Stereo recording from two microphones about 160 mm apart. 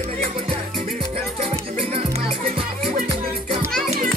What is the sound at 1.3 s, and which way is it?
Music, 35° right (ahead or behind).